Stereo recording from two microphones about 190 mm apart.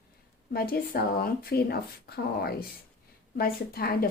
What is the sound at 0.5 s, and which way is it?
A woman's voice, 50° left (ahead or behind).